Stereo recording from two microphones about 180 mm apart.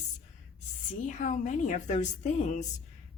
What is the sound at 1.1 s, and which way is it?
A woman's voice, 45° left (ahead or behind).